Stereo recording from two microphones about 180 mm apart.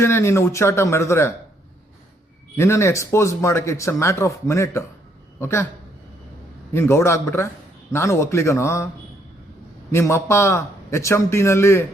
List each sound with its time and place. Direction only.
0.0 s speech: 15° left (ahead or behind)
2.6 s a man's voice: 15° left (ahead or behind)
6.7 s speech: 15° left (ahead or behind)
9.9 s speech: 15° left (ahead or behind)